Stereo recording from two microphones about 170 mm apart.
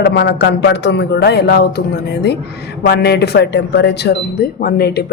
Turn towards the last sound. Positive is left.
turn(degrees=70)  # may be behind; listen again after turning